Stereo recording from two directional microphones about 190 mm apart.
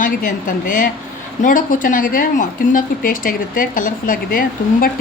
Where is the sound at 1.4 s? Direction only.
45° left (ahead or behind).